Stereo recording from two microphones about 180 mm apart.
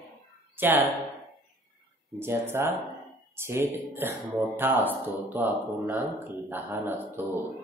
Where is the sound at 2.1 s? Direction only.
10° right (ahead or behind).